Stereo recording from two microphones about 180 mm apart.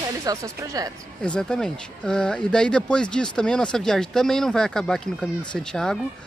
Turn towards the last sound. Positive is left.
turn(degrees=5)  # may be behind; listen again after turning